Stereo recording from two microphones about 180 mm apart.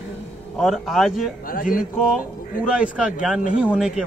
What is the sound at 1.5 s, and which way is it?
Music, 50° left (ahead or behind).